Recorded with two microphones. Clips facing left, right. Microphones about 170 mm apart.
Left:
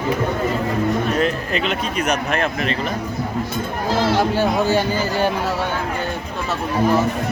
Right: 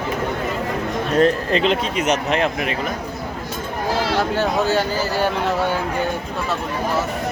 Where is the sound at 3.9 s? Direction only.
10° right (ahead or behind).